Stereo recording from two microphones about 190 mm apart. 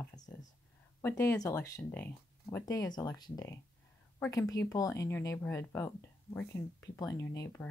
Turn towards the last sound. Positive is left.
turn(degrees=15)  # may be behind; listen again after turning